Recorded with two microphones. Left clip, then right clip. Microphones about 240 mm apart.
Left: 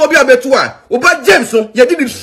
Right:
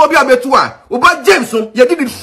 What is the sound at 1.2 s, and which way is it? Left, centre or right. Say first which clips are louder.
Speech: left 2 dB; centre.